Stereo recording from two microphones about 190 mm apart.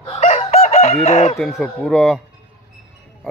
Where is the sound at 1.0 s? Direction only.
35° left (ahead or behind).